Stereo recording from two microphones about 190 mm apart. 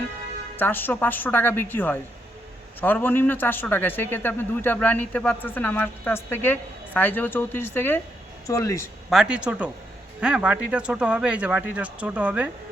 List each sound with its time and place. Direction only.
0.5 s a man's voice: 10° left (ahead or behind)
9.0 s speech: 5° right (ahead or behind)